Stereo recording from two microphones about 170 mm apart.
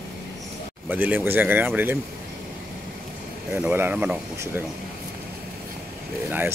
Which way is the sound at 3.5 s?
10° right (ahead or behind).